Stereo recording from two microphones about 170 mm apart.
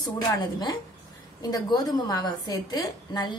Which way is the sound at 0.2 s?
25° left (ahead or behind).